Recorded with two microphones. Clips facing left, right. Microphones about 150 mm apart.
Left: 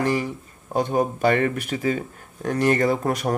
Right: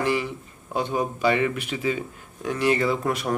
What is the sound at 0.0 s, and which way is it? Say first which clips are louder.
Speech: left 2 dB; 45° left (ahead or behind).